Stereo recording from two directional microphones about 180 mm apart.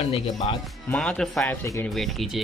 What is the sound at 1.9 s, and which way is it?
Speech, centre (ahead or behind).